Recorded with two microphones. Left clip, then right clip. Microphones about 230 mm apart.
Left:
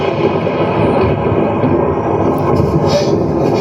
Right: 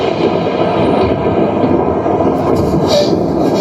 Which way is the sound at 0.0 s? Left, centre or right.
Right.